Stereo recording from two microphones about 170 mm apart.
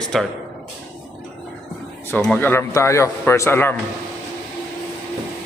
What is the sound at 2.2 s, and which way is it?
A man's voice, 5° left (ahead or behind).